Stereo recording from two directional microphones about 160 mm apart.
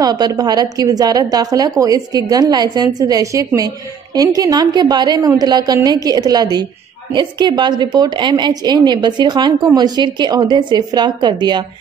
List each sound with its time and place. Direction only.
0.0 s a woman's voice: 25° right (ahead or behind)